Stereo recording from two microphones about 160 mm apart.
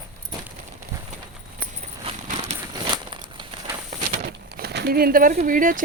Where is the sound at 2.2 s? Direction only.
55° right (ahead or behind).